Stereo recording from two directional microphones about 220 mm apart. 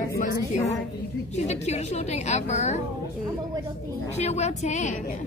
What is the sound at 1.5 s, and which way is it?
A woman's voice, 30° left (ahead or behind).